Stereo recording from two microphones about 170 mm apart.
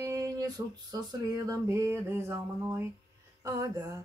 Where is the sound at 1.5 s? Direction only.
15° right (ahead or behind).